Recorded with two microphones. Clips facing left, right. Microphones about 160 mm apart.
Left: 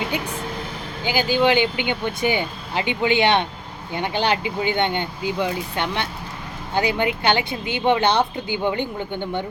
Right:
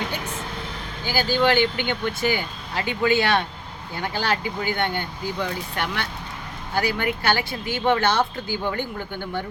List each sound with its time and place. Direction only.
1.0 s speech: 15° left (ahead or behind)